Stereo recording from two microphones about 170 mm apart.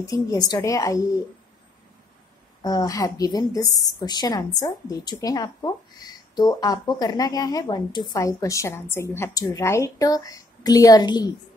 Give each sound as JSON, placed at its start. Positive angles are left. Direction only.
{"t": 0.0, "sound": "speech", "side_deg": 20}
{"t": 2.6, "sound": "speech", "side_deg": 20}